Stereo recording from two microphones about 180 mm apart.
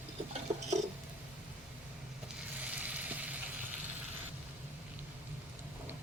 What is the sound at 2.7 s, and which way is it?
Frying, 10° right (ahead or behind).